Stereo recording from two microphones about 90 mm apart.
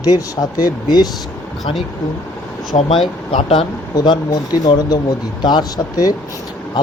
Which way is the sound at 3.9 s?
50° left (ahead or behind).